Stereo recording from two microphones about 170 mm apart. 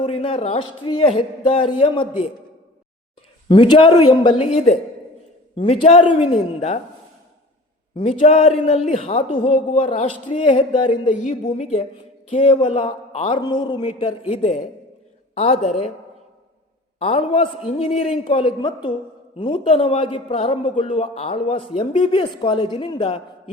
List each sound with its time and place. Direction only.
0.0 s a man's voice: 35° left (ahead or behind)
3.5 s a man's voice: 30° left (ahead or behind)
7.9 s a man's voice: 35° left (ahead or behind)
11.1 s a man's voice: 45° left (ahead or behind)
13.4 s speech: 25° left (ahead or behind)
14.3 s a man's voice: 40° left (ahead or behind)
17.0 s a man's voice: 35° left (ahead or behind)